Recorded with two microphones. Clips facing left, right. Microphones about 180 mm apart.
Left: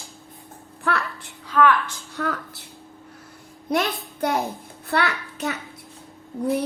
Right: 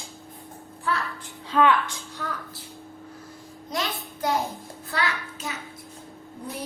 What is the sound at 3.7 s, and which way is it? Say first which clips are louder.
A child's voice: left 7 dB; 60° left (ahead or behind).